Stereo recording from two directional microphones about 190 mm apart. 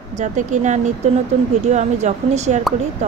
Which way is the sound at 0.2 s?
40° right (ahead or behind).